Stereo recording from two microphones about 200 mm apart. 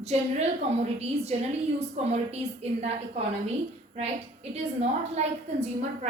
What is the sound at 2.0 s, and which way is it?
A woman's voice, 35° right (ahead or behind).